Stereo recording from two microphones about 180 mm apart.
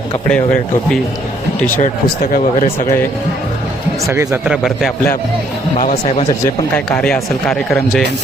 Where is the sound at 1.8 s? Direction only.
45° left (ahead or behind).